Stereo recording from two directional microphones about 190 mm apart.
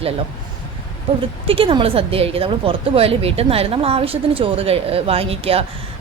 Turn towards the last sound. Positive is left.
turn(degrees=-30)  # may be behind; listen again after turning